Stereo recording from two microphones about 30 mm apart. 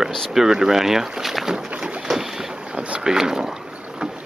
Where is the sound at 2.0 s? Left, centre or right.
Centre.